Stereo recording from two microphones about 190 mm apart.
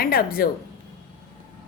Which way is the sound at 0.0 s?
50° left (ahead or behind).